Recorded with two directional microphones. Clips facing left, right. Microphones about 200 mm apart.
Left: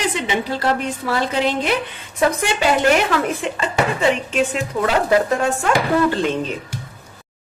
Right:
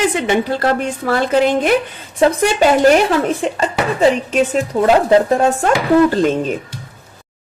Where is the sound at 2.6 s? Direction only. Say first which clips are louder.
Right 6 dB; 40° right (ahead or behind).